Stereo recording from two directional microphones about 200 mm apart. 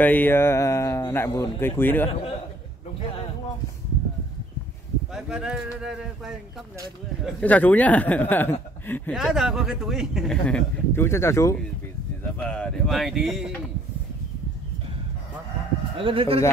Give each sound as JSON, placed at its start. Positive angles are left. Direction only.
{"t": 0.0, "sound": "speech", "side_deg": 10}
{"t": 5.1, "sound": "speech", "side_deg": -5}
{"t": 9.1, "sound": "speech", "side_deg": 0}
{"t": 16.0, "sound": "speech", "side_deg": -25}